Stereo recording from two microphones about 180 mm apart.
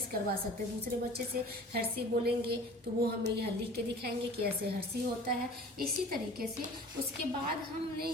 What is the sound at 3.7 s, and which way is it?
Speech, 60° right (ahead or behind).